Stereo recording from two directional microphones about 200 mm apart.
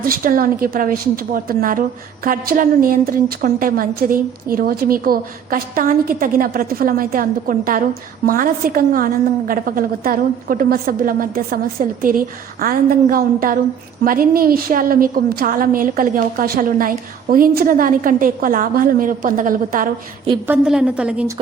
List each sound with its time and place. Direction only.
0.0 s a woman's voice: 45° right (ahead or behind)
20.5 s a woman's voice: 5° right (ahead or behind)